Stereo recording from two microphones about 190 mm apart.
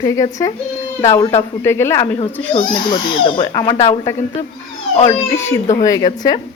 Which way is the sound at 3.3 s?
20° left (ahead or behind).